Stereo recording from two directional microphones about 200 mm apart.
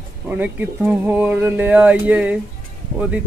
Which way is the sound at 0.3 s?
10° right (ahead or behind).